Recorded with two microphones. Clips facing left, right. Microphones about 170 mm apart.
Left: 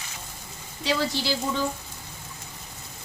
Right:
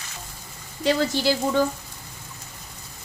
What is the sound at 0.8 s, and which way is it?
Speech, 50° right (ahead or behind).